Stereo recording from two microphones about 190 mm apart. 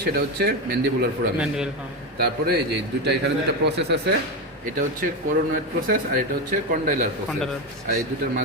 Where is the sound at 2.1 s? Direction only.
55° right (ahead or behind).